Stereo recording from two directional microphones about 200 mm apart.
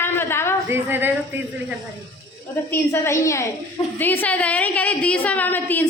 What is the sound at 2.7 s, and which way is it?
A woman's voice, 15° left (ahead or behind).